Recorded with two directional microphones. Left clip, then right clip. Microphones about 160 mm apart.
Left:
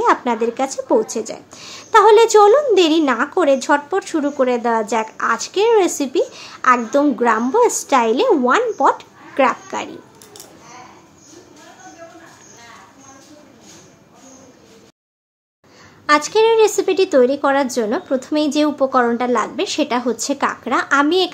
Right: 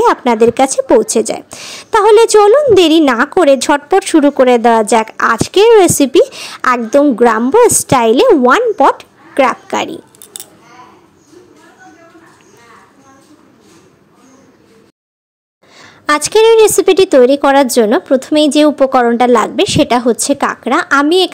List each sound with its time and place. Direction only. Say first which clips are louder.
0.0 s a woman's voice: right 7 dB; 45° right (ahead or behind)
15.8 s a woman's voice: right 2 dB; 50° right (ahead or behind)